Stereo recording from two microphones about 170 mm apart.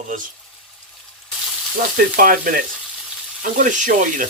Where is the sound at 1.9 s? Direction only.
55° right (ahead or behind).